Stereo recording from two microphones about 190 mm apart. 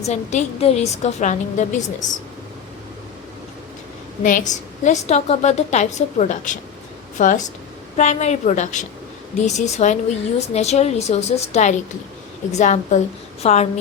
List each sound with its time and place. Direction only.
0.0 s a woman's voice: 35° left (ahead or behind)
4.2 s a woman's voice: 45° left (ahead or behind)